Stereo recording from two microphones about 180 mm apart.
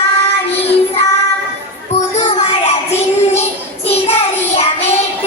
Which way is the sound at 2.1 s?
40° left (ahead or behind).